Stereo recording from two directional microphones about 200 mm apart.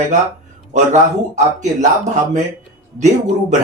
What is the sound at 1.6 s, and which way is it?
Speech, 35° right (ahead or behind).